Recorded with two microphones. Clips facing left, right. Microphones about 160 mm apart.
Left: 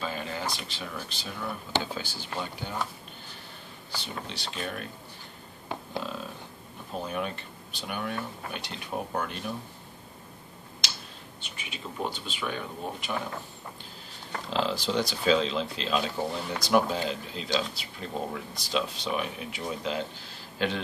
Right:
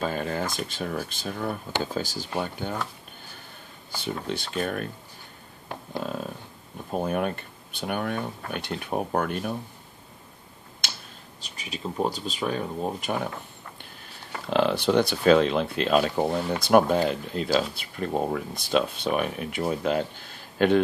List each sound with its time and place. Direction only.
0.0 s speech: 50° right (ahead or behind)
3.9 s speech: 50° right (ahead or behind)
6.0 s speech: 50° right (ahead or behind)
10.8 s tick-tock: 50° right (ahead or behind)
11.4 s speech: 35° right (ahead or behind)
14.5 s speech: 60° right (ahead or behind)